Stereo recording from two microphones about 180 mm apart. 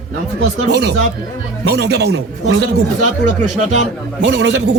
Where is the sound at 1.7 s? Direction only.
65° right (ahead or behind).